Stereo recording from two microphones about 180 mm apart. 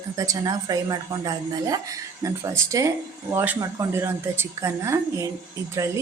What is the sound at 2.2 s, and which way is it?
A woman's voice, 15° right (ahead or behind).